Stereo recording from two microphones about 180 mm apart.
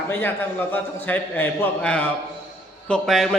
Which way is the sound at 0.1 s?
10° left (ahead or behind).